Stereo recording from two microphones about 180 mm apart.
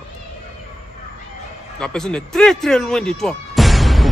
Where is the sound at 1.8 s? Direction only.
5° left (ahead or behind).